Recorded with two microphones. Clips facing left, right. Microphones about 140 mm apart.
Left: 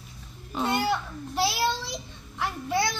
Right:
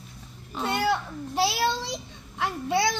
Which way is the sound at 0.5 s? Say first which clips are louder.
Left 2 dB; 5° left (ahead or behind).